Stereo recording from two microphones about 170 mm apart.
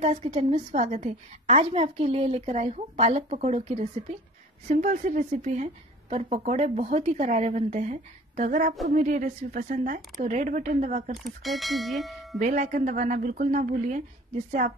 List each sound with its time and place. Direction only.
0.0 s a woman's voice: 40° right (ahead or behind)
11.2 s bell: centre (ahead or behind)
12.4 s a woman's voice: 45° right (ahead or behind)